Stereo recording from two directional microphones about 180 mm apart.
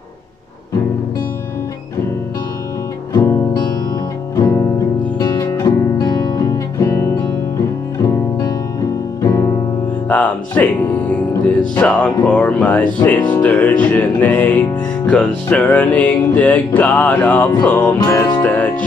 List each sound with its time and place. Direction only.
3.1 s music: 20° left (ahead or behind)